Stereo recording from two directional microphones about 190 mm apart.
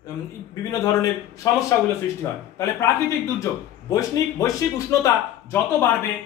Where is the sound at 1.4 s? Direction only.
20° left (ahead or behind).